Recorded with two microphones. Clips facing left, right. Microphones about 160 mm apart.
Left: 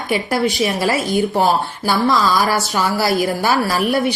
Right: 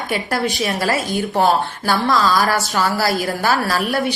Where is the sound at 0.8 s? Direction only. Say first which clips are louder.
Left 3 dB; 10° left (ahead or behind).